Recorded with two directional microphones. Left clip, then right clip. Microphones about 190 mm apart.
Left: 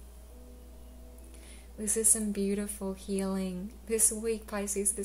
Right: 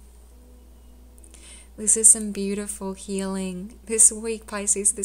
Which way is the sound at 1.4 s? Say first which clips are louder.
Right 11 dB; 35° right (ahead or behind).